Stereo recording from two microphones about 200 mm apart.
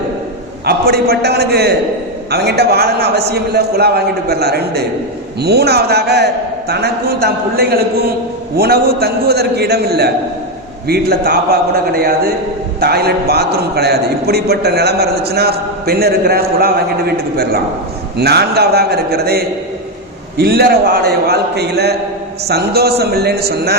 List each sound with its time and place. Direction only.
0.6 s a man's voice: 50° right (ahead or behind)